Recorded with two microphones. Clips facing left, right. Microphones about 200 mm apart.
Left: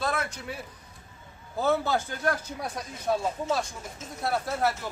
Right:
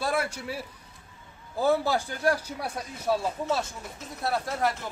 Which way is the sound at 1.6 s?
10° right (ahead or behind).